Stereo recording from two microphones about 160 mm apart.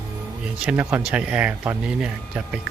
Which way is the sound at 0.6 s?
10° right (ahead or behind).